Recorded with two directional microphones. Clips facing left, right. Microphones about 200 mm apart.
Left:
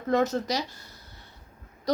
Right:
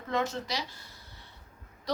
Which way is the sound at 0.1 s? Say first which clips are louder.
Left 7 dB; 40° left (ahead or behind).